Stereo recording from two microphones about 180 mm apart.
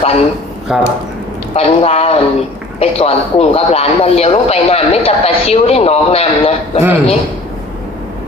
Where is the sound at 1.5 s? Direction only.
35° left (ahead or behind).